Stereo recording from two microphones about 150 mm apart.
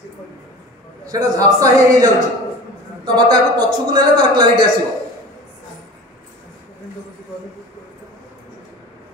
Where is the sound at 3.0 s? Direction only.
30° right (ahead or behind).